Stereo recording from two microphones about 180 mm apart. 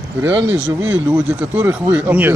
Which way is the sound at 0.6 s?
10° right (ahead or behind).